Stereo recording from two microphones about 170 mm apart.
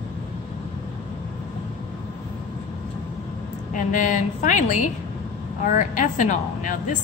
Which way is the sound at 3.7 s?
50° left (ahead or behind).